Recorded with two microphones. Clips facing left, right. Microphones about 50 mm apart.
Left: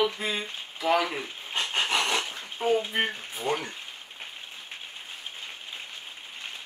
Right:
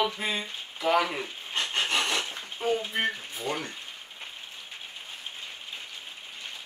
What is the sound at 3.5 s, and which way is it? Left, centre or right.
Speech, left.